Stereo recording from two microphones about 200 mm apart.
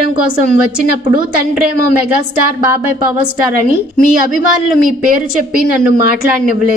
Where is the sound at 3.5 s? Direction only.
45° right (ahead or behind).